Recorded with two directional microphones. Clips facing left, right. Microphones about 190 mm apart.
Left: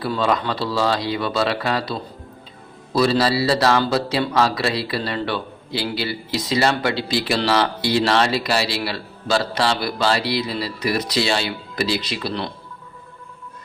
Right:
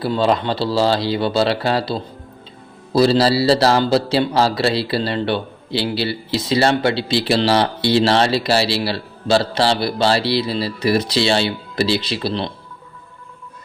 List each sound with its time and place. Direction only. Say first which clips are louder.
0.0 s a man's voice: right 3 dB; 30° right (ahead or behind)